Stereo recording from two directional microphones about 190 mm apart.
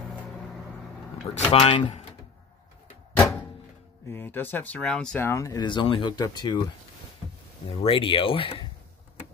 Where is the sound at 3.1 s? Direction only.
5° left (ahead or behind).